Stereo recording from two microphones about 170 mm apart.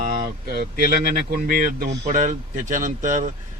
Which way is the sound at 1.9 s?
45° right (ahead or behind).